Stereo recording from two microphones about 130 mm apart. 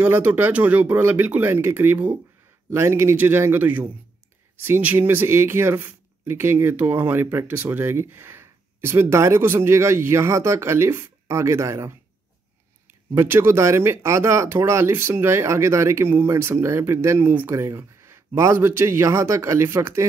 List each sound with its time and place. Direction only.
0.0 s speech: 15° right (ahead or behind)